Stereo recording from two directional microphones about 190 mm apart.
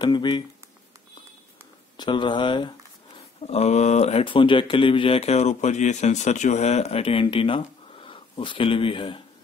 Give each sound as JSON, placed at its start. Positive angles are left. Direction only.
{"t": 0.0, "sound": "speech", "side_deg": 25}
{"t": 2.0, "sound": "speech", "side_deg": 25}
{"t": 3.4, "sound": "speech", "side_deg": 35}